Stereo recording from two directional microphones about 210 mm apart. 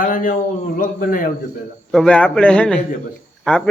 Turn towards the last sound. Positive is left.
turn(degrees=5)  # may be behind; listen again after turning